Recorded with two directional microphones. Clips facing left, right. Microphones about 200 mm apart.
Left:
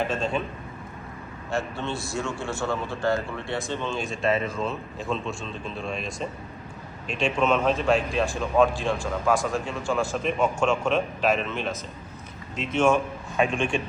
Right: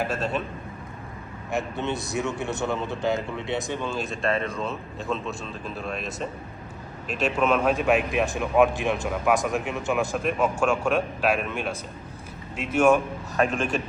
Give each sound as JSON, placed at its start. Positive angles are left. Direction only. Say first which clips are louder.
{"t": 0.0, "sound": "a man's voice", "louder": "left 1 dB", "side_deg": -5}
{"t": 1.5, "sound": "a man's voice", "louder": "right 1 dB", "side_deg": -20}
{"t": 10.2, "sound": "a man's voice", "louder": "even", "side_deg": -5}